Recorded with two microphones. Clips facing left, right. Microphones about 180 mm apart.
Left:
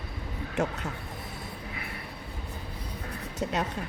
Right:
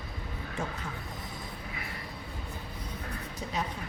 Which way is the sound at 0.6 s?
90° left.